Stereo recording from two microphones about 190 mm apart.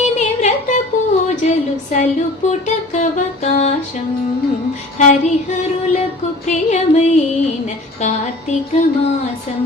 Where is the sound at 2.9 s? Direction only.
35° left (ahead or behind).